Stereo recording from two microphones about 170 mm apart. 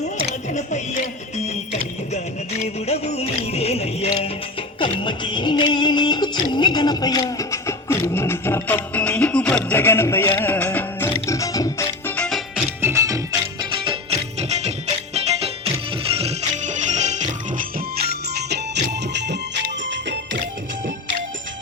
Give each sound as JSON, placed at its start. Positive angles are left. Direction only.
{"t": 1.5, "sound": "music", "side_deg": 40}
{"t": 12.5, "sound": "music", "side_deg": -15}
{"t": 20.3, "sound": "music", "side_deg": -50}